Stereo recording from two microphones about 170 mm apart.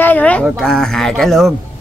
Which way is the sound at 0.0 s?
10° left (ahead or behind).